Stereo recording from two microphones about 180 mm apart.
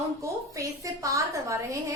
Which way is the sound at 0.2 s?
15° right (ahead or behind).